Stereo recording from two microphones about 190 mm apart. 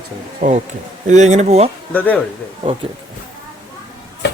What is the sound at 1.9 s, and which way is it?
Speech, 10° left (ahead or behind).